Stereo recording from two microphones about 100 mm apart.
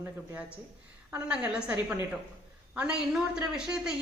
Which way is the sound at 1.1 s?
15° right (ahead or behind).